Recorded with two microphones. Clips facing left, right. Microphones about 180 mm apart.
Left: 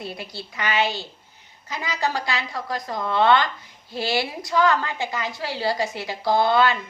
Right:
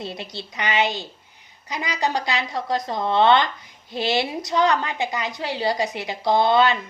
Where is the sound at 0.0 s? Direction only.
25° right (ahead or behind).